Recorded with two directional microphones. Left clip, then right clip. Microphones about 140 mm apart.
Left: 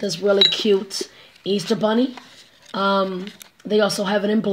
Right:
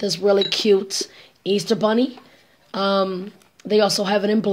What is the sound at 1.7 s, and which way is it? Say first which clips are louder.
Speech: even; 40° right (ahead or behind).